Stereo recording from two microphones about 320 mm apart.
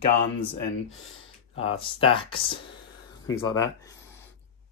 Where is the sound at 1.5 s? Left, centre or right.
Centre.